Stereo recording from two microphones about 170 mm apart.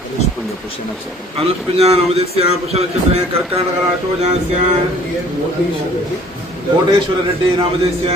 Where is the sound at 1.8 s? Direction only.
35° right (ahead or behind).